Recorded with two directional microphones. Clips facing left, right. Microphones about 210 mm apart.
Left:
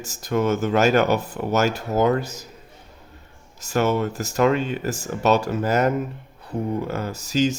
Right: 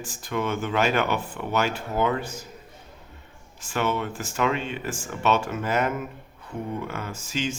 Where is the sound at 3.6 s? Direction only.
40° left (ahead or behind).